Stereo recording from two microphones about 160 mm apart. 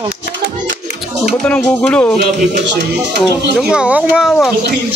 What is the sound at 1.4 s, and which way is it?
Speech, 10° left (ahead or behind).